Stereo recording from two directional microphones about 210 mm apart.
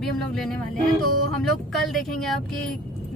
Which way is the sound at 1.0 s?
90° right.